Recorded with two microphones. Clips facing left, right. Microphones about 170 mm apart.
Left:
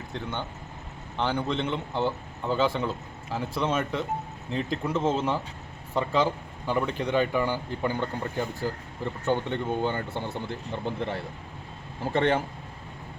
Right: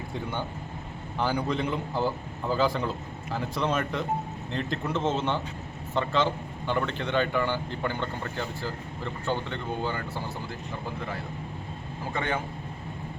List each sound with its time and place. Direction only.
0.1 s a man's voice: 10° right (ahead or behind); by 12.4 s 30° left (ahead or behind)